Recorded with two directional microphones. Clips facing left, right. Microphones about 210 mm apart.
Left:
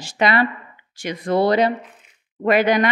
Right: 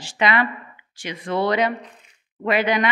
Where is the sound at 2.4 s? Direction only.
45° left (ahead or behind).